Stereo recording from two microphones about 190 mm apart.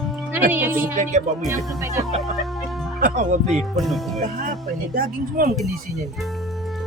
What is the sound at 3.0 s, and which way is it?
Speech, 40° right (ahead or behind).